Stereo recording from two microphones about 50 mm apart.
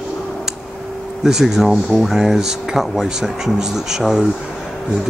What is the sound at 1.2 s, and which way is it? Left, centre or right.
Speech, centre.